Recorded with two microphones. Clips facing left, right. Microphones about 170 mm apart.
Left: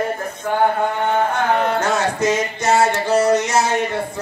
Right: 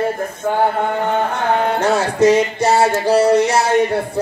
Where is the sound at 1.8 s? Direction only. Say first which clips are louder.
Right 4 dB; 35° right (ahead or behind).